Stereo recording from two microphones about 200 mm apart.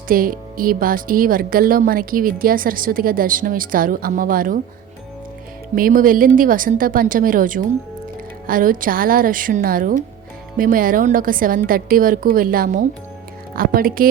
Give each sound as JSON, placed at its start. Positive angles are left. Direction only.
{"t": 0.1, "sound": "speech", "side_deg": -45}
{"t": 5.7, "sound": "speech", "side_deg": -45}